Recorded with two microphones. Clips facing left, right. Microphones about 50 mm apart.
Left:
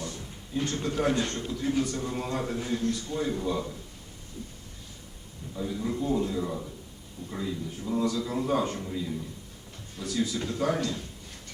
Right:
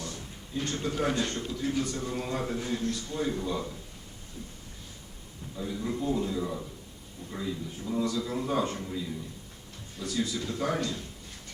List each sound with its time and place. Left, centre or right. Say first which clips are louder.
0.0 s a sound: left 2 dB; centre
0.7 s a man's voice: left 2 dB; centre
5.5 s a man's voice: left 2 dB; centre